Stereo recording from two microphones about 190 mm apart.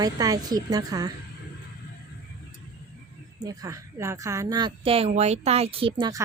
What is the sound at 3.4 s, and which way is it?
A woman's voice, 20° right (ahead or behind).